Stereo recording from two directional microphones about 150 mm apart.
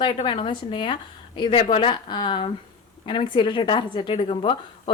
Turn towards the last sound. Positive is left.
turn(degrees=35)  # may be behind; listen again after turning